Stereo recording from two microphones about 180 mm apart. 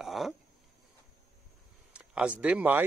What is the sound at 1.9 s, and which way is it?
Speech, 5° right (ahead or behind).